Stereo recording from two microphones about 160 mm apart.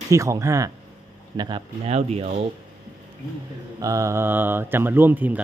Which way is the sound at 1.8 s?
40° right (ahead or behind).